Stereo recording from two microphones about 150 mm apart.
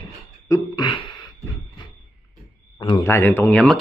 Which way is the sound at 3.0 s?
15° left (ahead or behind).